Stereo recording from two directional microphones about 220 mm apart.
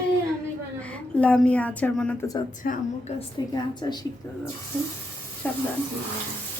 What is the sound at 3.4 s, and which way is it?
Speech, 20° left (ahead or behind).